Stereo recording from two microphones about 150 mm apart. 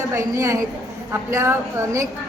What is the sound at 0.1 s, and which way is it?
A woman's voice, 20° right (ahead or behind).